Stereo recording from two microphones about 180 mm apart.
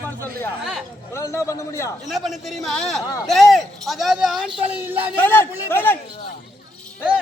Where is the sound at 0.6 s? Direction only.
Centre (ahead or behind).